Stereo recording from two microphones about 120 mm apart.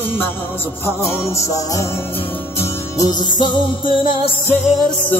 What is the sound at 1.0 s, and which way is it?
Music, 20° left (ahead or behind).